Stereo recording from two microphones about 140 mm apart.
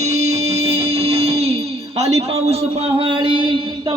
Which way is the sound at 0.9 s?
45° right (ahead or behind).